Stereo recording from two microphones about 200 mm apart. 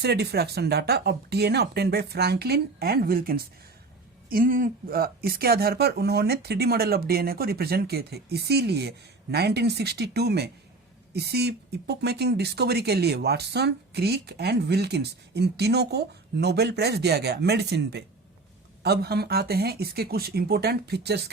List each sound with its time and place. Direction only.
0.0 s speech: 55° right (ahead or behind)